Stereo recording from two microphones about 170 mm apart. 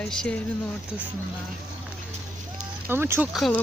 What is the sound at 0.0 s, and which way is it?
Speech, 5° left (ahead or behind).